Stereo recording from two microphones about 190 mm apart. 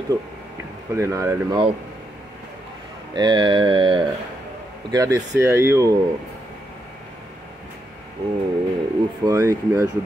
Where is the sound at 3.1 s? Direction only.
25° right (ahead or behind).